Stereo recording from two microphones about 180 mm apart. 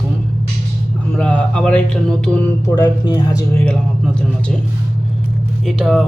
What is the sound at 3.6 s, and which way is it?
Speech, 5° left (ahead or behind).